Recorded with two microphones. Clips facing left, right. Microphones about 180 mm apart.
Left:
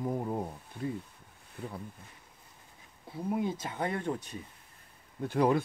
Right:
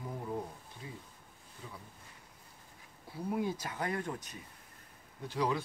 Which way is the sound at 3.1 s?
25° left (ahead or behind).